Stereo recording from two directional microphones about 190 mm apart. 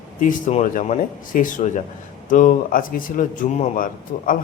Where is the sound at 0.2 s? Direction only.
45° left (ahead or behind).